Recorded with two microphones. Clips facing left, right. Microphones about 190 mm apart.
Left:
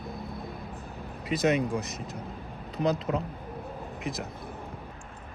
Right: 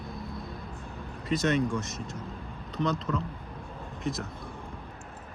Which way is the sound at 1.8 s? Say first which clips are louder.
Even; centre (ahead or behind).